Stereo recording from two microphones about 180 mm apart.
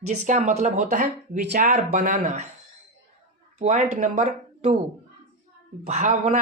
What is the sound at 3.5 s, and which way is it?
Speech, 45° right (ahead or behind).